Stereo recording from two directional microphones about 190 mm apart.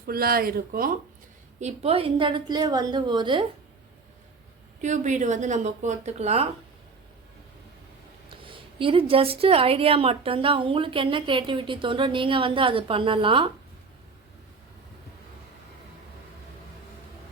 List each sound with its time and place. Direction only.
0.1 s speech: 50° right (ahead or behind)
1.5 s a woman's voice: 35° right (ahead or behind)
4.8 s speech: 40° right (ahead or behind)
8.3 s a woman's voice: 25° right (ahead or behind)